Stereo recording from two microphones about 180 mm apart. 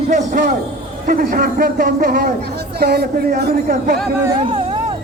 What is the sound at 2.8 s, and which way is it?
Speech, 60° right (ahead or behind).